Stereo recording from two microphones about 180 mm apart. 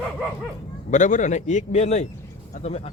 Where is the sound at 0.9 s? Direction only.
45° left (ahead or behind).